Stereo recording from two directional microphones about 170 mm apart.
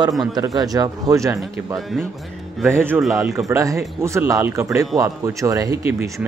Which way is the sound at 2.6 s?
15° right (ahead or behind).